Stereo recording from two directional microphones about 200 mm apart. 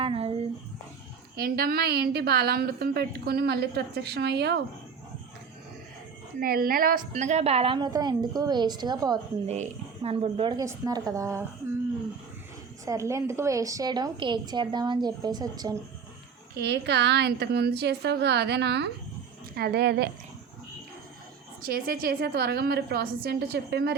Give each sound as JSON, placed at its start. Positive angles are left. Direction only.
{"t": 0.0, "sound": "a sound", "side_deg": -30}
{"t": 1.4, "sound": "a woman's voice", "side_deg": -50}
{"t": 6.4, "sound": "a woman's voice", "side_deg": -45}
{"t": 7.1, "sound": "a woman's voice", "side_deg": -35}
{"t": 9.5, "sound": "a woman's voice", "side_deg": -30}
{"t": 12.8, "sound": "a woman's voice", "side_deg": -15}
{"t": 16.6, "sound": "a woman's voice", "side_deg": -55}
{"t": 21.6, "sound": "a woman's voice", "side_deg": -45}